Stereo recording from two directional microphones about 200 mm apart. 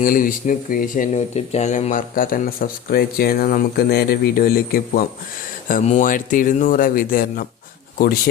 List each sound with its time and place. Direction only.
0.0 s speech: 45° left (ahead or behind)
5.6 s speech: 40° left (ahead or behind)